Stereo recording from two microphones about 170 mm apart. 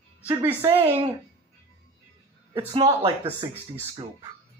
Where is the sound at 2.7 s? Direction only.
35° right (ahead or behind).